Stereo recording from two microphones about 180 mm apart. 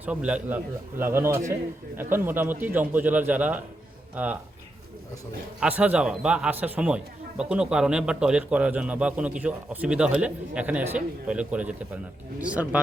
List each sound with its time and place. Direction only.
0.0 s speech: 5° right (ahead or behind)
5.5 s speech: 10° right (ahead or behind)